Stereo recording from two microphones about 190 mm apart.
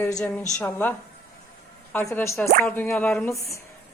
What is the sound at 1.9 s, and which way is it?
Speech, 10° left (ahead or behind).